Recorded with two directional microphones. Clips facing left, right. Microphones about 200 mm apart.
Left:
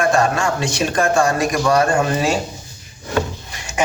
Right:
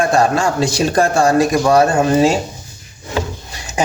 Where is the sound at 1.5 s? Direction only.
25° right (ahead or behind).